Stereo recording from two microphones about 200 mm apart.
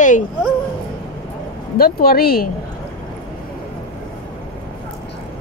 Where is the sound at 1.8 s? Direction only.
50° left (ahead or behind).